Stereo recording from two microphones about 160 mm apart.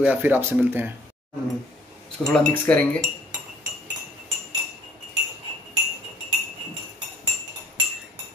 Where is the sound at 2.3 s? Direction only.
10° left (ahead or behind).